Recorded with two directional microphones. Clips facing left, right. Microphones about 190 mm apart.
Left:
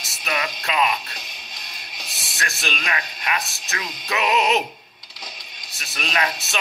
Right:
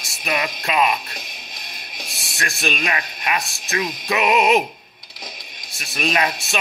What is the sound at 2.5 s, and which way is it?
Speech, 15° right (ahead or behind).